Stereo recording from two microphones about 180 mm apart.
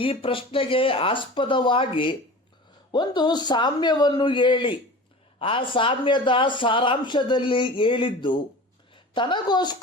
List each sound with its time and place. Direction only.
0.0 s a man's voice: 30° left (ahead or behind)